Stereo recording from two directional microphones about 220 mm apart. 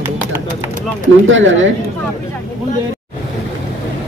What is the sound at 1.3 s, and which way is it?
Speech, 60° right (ahead or behind).